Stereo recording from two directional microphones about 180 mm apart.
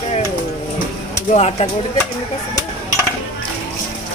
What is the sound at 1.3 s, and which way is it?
Speech, 35° left (ahead or behind).